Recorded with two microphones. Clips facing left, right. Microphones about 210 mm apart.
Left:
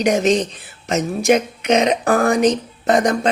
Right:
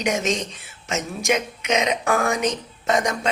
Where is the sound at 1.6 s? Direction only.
35° left (ahead or behind).